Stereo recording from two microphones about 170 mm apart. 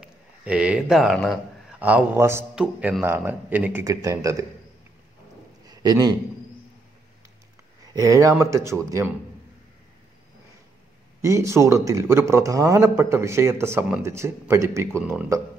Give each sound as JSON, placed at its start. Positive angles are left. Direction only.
{"t": 0.0, "sound": "speech", "side_deg": -5}
{"t": 5.7, "sound": "a sound", "side_deg": -25}
{"t": 7.9, "sound": "speech", "side_deg": -20}
{"t": 11.1, "sound": "speech", "side_deg": -15}